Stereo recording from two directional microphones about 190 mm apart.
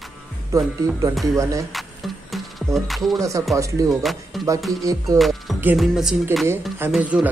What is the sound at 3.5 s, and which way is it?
Music, 15° right (ahead or behind).